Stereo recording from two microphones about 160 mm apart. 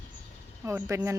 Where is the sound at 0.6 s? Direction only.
15° right (ahead or behind).